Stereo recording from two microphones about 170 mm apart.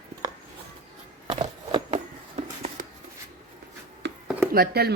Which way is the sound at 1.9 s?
45° right (ahead or behind).